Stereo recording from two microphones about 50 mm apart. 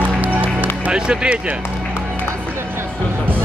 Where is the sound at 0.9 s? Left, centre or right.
Centre.